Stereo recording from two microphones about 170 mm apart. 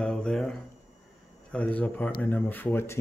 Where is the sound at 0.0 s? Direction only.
5° left (ahead or behind).